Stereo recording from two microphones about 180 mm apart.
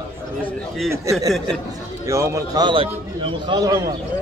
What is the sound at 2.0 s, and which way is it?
A man's voice, 15° right (ahead or behind).